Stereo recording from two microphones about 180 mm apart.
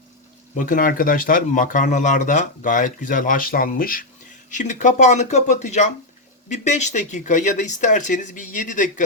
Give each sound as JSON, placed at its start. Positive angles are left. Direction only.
{"t": 0.5, "sound": "speech", "side_deg": 45}